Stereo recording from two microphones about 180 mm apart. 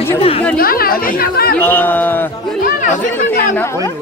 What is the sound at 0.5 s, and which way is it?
Speech, 55° left (ahead or behind).